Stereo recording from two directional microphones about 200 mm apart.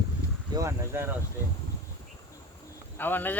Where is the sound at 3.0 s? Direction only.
10° left (ahead or behind).